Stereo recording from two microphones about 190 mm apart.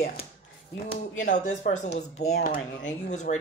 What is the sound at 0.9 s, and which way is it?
Speech, 40° left (ahead or behind).